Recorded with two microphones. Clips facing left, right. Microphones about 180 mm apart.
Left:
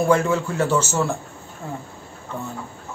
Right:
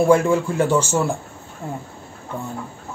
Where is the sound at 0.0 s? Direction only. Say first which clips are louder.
Right 3 dB; 10° right (ahead or behind).